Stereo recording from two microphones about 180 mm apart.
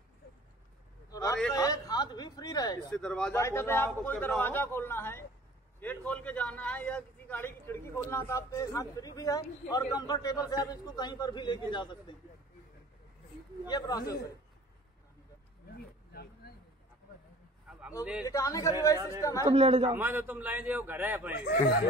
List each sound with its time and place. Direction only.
1.1 s a sound: 20° left (ahead or behind)
2.9 s speech: 5° left (ahead or behind)
3.3 s a man's voice: 15° left (ahead or behind)
13.7 s a man's voice: 20° left (ahead or behind)
16.1 s a sound: 60° left (ahead or behind)
17.6 s a sound: 5° right (ahead or behind)
18.2 s a man's voice: 20° left (ahead or behind)
19.5 s a man's voice: 35° right (ahead or behind)
19.9 s a man's voice: 10° right (ahead or behind)
21.5 s speech: 65° left (ahead or behind)